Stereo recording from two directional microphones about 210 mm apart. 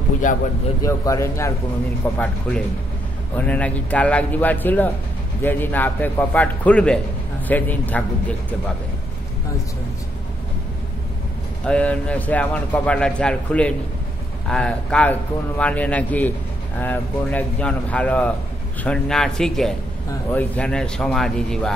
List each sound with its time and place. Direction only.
0.2 s speech: 40° left (ahead or behind)
0.8 s a man's voice: 15° left (ahead or behind)
3.3 s a man's voice: 5° left (ahead or behind)
11.6 s a man's voice: 5° left (ahead or behind)